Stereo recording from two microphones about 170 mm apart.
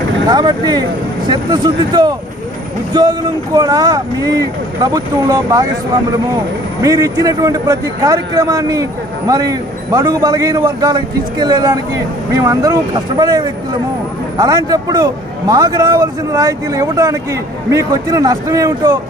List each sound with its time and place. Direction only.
0.3 s a man's voice: 25° right (ahead or behind)
6.8 s a man's voice: 20° right (ahead or behind)